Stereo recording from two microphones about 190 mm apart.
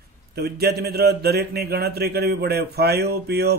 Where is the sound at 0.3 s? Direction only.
55° right (ahead or behind).